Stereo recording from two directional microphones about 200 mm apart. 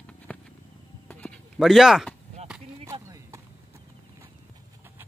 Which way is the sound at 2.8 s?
15° right (ahead or behind).